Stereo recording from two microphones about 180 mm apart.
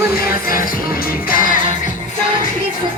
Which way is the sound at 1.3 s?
50° left (ahead or behind).